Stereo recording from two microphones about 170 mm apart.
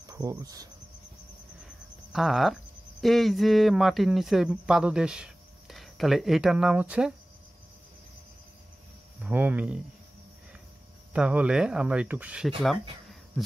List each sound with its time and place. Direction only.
0.0 s cricket: 20° right (ahead or behind)
2.1 s speech: centre (ahead or behind)
9.2 s speech: 10° right (ahead or behind)
11.1 s speech: 5° right (ahead or behind)